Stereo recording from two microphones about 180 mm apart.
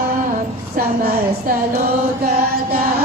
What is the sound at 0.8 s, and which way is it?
Speech, 55° right (ahead or behind).